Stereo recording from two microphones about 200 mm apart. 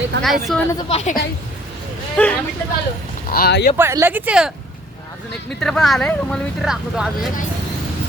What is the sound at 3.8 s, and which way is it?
Speech, 15° right (ahead or behind).